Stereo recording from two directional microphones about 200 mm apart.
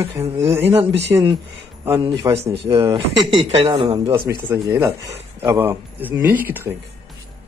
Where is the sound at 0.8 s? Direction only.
60° right (ahead or behind).